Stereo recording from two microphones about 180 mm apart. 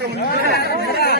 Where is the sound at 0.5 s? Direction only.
65° left (ahead or behind).